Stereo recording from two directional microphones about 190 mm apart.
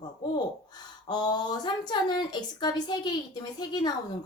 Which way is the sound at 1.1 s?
20° left (ahead or behind).